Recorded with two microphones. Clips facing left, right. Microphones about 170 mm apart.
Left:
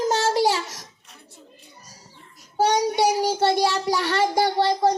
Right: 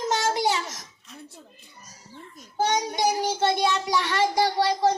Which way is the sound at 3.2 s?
35° left (ahead or behind).